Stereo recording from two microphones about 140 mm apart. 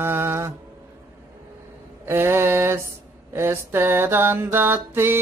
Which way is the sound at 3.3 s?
20° right (ahead or behind).